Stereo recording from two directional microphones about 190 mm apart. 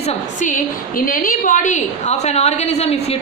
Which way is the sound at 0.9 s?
50° left (ahead or behind).